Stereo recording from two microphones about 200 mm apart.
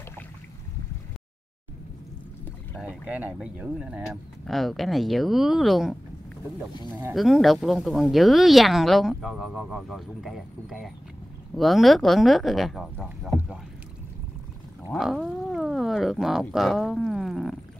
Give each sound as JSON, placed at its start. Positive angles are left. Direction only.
{"t": 2.8, "sound": "speech", "side_deg": -5}
{"t": 6.7, "sound": "speech", "side_deg": 20}
{"t": 7.2, "sound": "speech", "side_deg": 0}
{"t": 14.9, "sound": "speech", "side_deg": 0}